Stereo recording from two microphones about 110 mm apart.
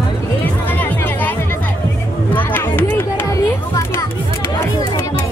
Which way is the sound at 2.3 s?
20° left (ahead or behind).